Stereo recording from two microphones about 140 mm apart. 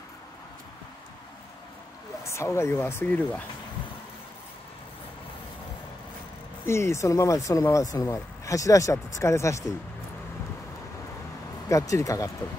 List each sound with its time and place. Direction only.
2.2 s speech: 20° left (ahead or behind)
6.6 s speech: 20° left (ahead or behind)
11.7 s speech: 25° left (ahead or behind)